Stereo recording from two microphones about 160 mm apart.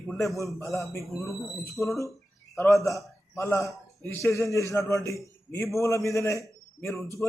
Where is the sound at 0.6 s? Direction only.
20° left (ahead or behind).